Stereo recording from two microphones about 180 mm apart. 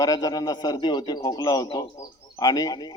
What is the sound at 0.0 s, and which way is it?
A man's voice, 20° left (ahead or behind).